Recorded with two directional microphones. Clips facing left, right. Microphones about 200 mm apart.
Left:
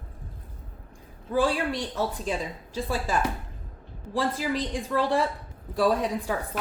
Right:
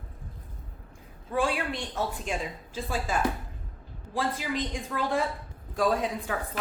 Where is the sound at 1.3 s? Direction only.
35° left (ahead or behind).